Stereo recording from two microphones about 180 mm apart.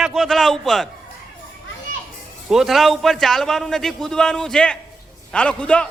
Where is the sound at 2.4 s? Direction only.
5° right (ahead or behind).